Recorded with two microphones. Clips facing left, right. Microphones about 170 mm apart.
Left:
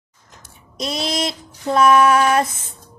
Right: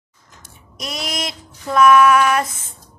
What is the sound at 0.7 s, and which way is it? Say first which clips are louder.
Female singing: left 5 dB; 30° left (ahead or behind).